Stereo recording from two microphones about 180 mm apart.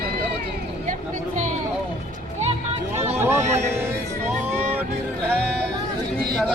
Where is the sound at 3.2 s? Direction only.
15° right (ahead or behind).